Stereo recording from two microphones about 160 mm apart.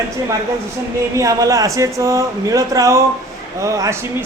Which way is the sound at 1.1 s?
20° right (ahead or behind).